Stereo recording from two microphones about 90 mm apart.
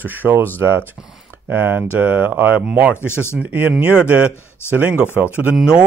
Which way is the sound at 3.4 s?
20° right (ahead or behind).